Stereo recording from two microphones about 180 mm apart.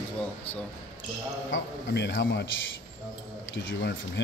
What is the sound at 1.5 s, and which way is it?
Speech, 70° left (ahead or behind).